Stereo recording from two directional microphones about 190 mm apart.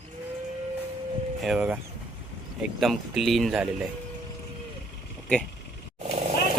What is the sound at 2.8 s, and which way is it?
Speech, centre (ahead or behind).